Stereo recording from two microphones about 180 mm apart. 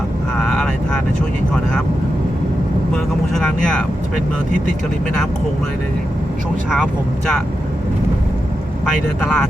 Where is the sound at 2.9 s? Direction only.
Centre (ahead or behind).